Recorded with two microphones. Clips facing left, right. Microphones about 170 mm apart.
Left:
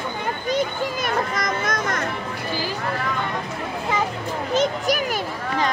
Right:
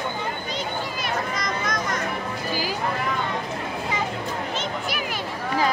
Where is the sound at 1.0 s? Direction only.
50° left (ahead or behind).